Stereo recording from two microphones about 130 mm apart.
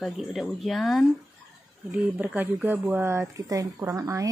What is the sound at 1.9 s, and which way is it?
A woman's voice, 10° right (ahead or behind).